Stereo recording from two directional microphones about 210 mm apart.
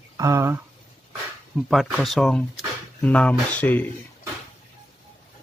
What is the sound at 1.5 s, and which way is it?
Speech, centre (ahead or behind).